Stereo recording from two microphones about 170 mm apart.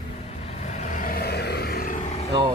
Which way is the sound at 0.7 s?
45° left (ahead or behind).